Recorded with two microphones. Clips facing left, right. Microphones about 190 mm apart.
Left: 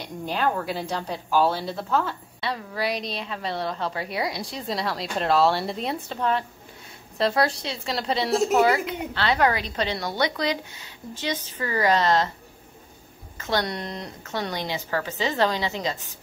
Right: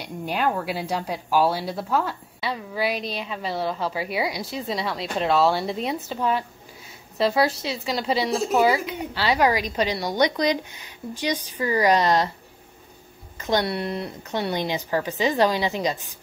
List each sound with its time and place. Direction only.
0.0 s a woman's voice: 10° right (ahead or behind)
13.4 s a woman's voice: 15° right (ahead or behind)